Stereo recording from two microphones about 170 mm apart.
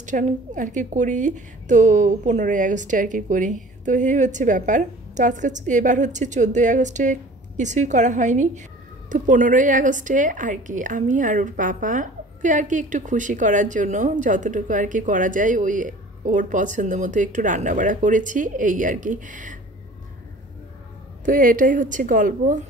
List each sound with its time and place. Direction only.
0.0 s a woman's voice: 45° right (ahead or behind)
21.3 s a woman's voice: 55° right (ahead or behind)